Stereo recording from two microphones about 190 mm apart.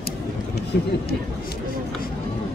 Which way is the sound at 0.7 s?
55° left (ahead or behind).